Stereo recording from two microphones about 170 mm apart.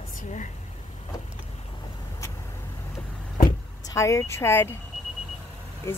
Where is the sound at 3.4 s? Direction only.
20° left (ahead or behind).